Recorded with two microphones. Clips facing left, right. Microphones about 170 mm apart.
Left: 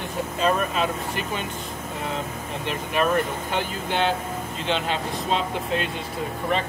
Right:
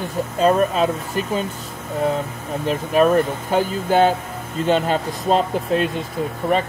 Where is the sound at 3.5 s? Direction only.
40° right (ahead or behind).